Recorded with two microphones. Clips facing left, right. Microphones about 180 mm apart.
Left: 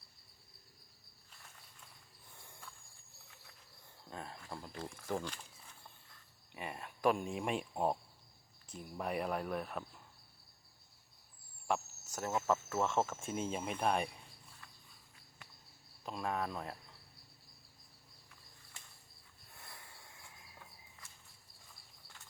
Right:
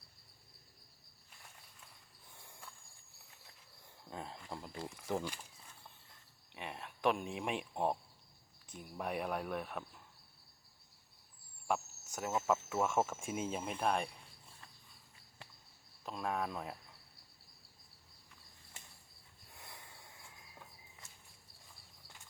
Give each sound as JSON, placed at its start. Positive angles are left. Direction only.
{"t": 4.1, "sound": "speech", "side_deg": -15}
{"t": 6.5, "sound": "speech", "side_deg": 0}
{"t": 11.7, "sound": "cricket", "side_deg": -5}
{"t": 12.5, "sound": "speech", "side_deg": -10}
{"t": 16.0, "sound": "speech", "side_deg": 0}
{"t": 19.5, "sound": "a sound", "side_deg": -15}